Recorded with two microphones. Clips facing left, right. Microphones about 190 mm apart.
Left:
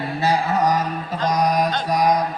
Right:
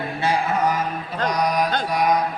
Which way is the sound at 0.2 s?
40° left (ahead or behind).